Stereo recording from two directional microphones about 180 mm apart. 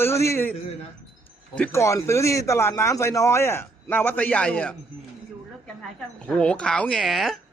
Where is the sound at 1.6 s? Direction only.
15° left (ahead or behind).